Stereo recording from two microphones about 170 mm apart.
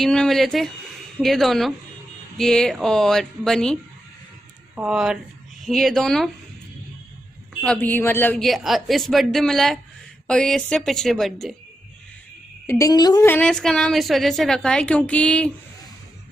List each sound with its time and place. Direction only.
0.0 s a woman's voice: centre (ahead or behind)
4.7 s a woman's voice: 5° right (ahead or behind)
7.6 s a man's voice: 5° left (ahead or behind)
8.5 s a woman's voice: centre (ahead or behind)
12.6 s a woman's voice: 20° left (ahead or behind)
13.3 s a woman's voice: 5° left (ahead or behind)